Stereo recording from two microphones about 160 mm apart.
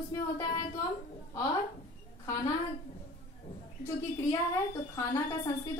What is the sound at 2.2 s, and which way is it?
Speech, 20° left (ahead or behind).